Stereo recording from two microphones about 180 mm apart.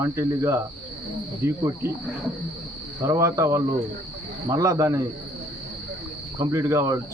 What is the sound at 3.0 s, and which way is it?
Speech, 15° right (ahead or behind).